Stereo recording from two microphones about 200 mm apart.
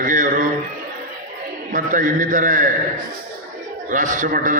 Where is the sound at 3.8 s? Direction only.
40° right (ahead or behind).